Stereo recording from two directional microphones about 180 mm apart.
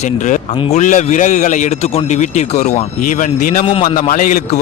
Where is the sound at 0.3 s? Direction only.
45° left (ahead or behind).